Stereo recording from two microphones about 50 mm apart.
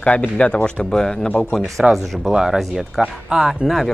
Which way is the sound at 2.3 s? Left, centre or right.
Centre.